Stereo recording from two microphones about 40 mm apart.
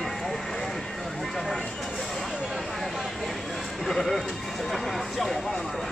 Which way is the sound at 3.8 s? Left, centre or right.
Centre.